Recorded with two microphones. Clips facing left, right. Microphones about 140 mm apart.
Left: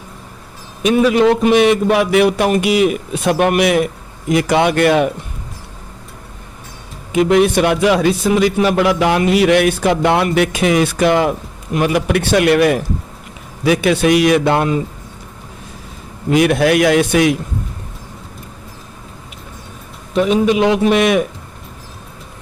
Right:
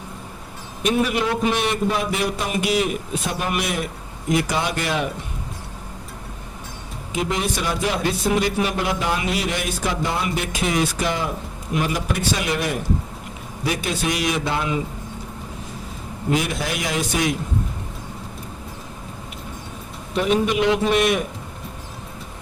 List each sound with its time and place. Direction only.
0.8 s a man's voice: 90° left; by 5.0 s 65° left (ahead or behind)
7.1 s a man's voice: 65° left (ahead or behind)
16.3 s a man's voice: 65° left (ahead or behind)
20.7 s a man's voice: 90° left